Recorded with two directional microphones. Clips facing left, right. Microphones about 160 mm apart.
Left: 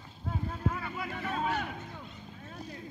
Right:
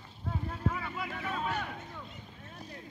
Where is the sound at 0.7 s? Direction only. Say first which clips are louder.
Right 1 dB; 5° left (ahead or behind).